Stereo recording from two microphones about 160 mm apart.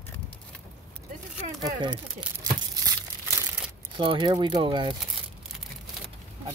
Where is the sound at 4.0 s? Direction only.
30° right (ahead or behind).